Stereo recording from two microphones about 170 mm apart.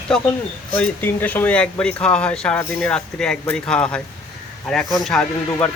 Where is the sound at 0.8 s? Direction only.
10° left (ahead or behind).